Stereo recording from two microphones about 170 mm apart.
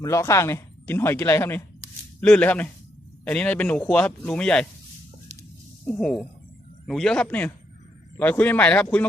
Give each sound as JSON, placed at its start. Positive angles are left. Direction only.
{"t": 0.0, "sound": "speech", "side_deg": 15}
{"t": 5.8, "sound": "a man's voice", "side_deg": 5}